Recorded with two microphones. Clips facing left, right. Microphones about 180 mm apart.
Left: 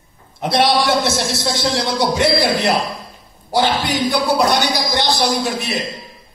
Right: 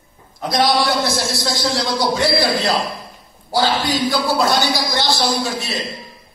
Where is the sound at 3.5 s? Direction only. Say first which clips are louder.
Left 1 dB; 20° left (ahead or behind).